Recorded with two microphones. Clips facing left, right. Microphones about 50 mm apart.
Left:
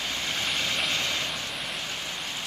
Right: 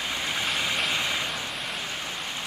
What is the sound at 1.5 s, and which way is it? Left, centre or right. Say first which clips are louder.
Vehicle: right 1 dB; centre.